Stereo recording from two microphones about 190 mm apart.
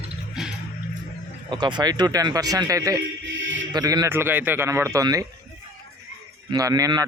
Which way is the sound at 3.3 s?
90° right.